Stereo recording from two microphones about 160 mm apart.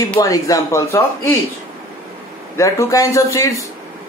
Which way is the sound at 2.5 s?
20° left (ahead or behind).